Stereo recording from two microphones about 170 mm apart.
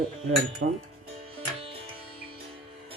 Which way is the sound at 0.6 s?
90° right.